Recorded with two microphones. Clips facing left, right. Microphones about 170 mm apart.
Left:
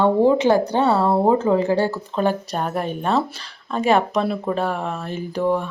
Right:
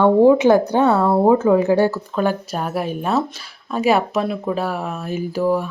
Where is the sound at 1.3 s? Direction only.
5° right (ahead or behind).